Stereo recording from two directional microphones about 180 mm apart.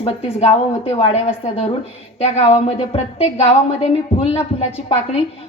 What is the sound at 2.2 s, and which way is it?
A woman's voice, 35° left (ahead or behind).